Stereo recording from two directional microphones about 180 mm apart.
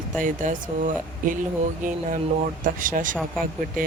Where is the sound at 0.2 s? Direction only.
45° right (ahead or behind).